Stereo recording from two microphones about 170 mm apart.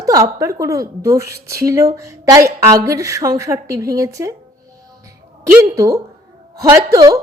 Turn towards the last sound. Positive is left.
turn(degrees=-20)  # may be behind; listen again after turning